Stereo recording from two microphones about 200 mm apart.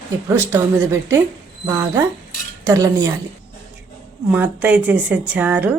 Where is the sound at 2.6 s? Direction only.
15° right (ahead or behind).